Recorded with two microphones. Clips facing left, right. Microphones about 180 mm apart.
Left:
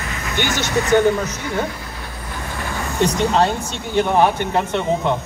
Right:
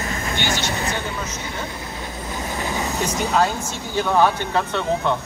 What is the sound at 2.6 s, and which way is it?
Vehicle, 20° right (ahead or behind).